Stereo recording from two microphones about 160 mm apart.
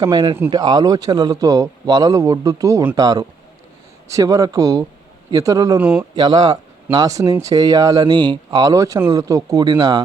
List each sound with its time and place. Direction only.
0.0 s speech: 25° right (ahead or behind)
5.8 s a man's voice: 10° right (ahead or behind)
6.1 s speech: 25° right (ahead or behind)